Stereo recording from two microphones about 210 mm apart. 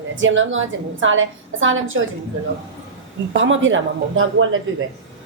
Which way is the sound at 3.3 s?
65° right (ahead or behind).